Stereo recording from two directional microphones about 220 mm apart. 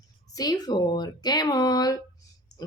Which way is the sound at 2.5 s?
15° left (ahead or behind).